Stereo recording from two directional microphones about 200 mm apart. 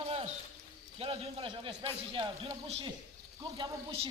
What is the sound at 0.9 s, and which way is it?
A woman's voice, 30° right (ahead or behind).